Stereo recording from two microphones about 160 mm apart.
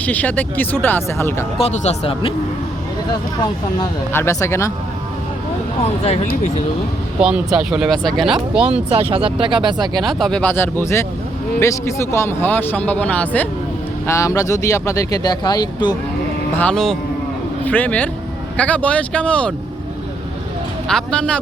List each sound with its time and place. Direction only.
0.0 s speech: 10° left (ahead or behind)
1.5 s speech: 40° left (ahead or behind)
4.1 s speech: 15° left (ahead or behind)
5.8 s speech: 40° left (ahead or behind)
7.2 s speech: 5° right (ahead or behind)
8.7 s speech: 35° right (ahead or behind)
10.0 s speech: centre (ahead or behind); by 16.0 s 25° left (ahead or behind)
16.6 s speech: 5° left (ahead or behind)
20.8 s speech: 5° left (ahead or behind)